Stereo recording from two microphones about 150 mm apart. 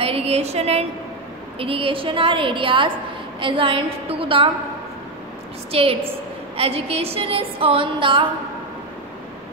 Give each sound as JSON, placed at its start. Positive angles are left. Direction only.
{"t": 0.0, "sound": "a sound", "side_deg": -40}
{"t": 1.6, "sound": "a woman's voice", "side_deg": -35}
{"t": 5.7, "sound": "a woman's voice", "side_deg": -40}